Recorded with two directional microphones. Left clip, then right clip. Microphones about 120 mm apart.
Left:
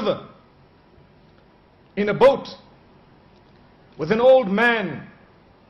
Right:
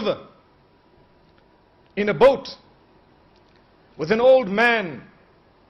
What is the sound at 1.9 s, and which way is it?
Speech, 5° right (ahead or behind).